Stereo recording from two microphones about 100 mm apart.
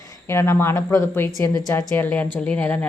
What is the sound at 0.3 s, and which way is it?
A woman's voice, 25° left (ahead or behind).